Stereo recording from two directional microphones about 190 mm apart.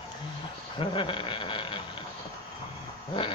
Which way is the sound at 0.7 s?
25° left (ahead or behind).